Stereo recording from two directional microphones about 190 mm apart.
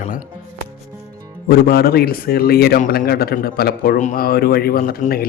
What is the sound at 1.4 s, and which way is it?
A man's voice, 55° left (ahead or behind).